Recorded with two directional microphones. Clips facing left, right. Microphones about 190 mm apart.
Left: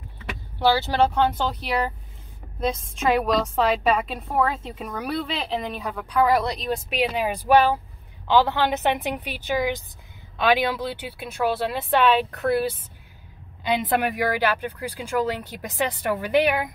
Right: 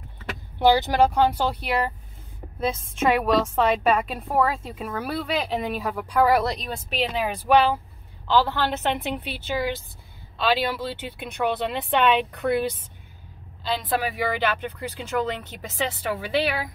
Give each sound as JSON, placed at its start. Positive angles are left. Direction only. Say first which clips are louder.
{"t": 0.6, "sound": "a woman's voice", "louder": "right 2 dB", "side_deg": -15}